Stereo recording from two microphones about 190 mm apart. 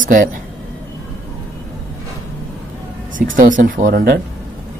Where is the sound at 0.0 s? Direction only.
45° right (ahead or behind).